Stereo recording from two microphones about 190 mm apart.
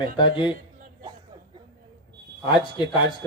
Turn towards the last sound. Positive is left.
turn(degrees=20)  # may be behind; listen again after turning